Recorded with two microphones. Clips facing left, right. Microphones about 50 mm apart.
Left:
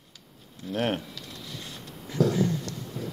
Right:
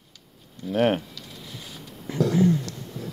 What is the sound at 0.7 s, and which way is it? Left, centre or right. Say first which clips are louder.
Speech: right 6 dB; centre.